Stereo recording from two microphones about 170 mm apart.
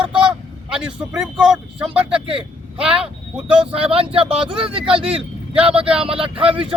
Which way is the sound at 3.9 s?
35° right (ahead or behind).